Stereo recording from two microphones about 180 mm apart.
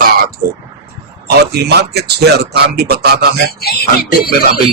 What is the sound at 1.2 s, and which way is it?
Speech, 65° right (ahead or behind).